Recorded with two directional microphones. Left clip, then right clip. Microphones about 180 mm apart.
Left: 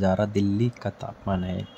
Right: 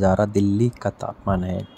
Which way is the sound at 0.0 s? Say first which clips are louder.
Right 5 dB; 15° right (ahead or behind).